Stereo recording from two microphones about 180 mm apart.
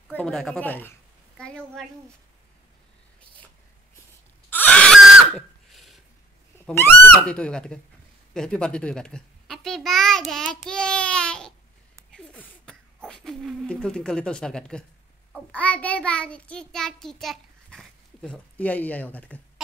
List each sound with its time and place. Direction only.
0.1 s speech: 5° left (ahead or behind)
4.5 s screaming: 10° left (ahead or behind)
6.6 s a child's voice: 10° left (ahead or behind)
12.1 s a sound: 5° left (ahead or behind)
13.1 s speech: centre (ahead or behind)
15.3 s child singing: 5° left (ahead or behind)